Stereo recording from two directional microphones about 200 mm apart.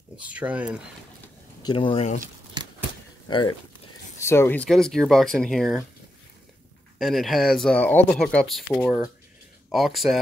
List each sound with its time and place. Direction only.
0.2 s speech: 5° right (ahead or behind)
1.6 s speech: 25° left (ahead or behind)
4.2 s speech: 15° left (ahead or behind)
7.0 s speech: centre (ahead or behind)